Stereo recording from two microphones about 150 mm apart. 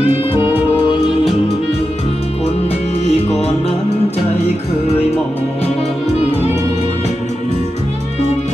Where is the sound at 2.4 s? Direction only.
45° left (ahead or behind).